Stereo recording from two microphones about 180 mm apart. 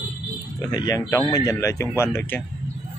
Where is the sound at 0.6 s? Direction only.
20° left (ahead or behind).